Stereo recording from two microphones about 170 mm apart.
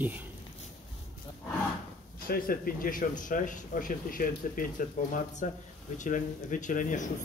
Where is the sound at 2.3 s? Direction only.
60° left (ahead or behind).